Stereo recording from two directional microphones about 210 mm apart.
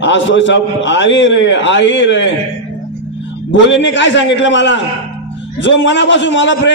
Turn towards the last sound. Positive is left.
turn(degrees=60)  # may be behind; listen again after turning